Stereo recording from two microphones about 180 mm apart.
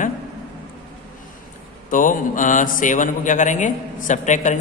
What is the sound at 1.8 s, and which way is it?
Speech, 45° left (ahead or behind).